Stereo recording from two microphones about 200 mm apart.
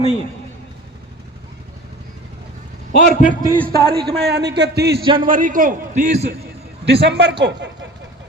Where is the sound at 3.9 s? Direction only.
55° right (ahead or behind).